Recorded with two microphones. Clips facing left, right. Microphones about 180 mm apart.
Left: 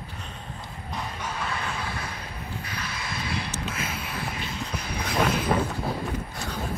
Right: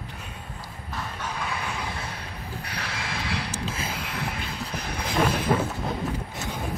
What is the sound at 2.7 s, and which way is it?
Vehicle, 85° right.